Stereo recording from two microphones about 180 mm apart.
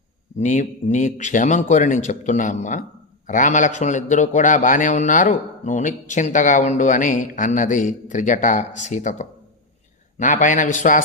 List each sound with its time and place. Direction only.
0.3 s a man's voice: 40° left (ahead or behind)